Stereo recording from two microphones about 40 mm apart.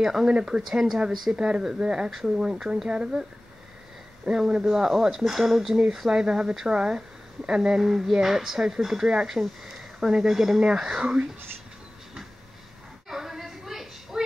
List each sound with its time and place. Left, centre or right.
0.0 s speech: centre
2.0 s speech: centre
4.3 s speech: centre
5.9 s speech: centre
7.8 s speech: centre
9.4 s a sound: centre
10.1 s speech: centre
13.1 s a sound: centre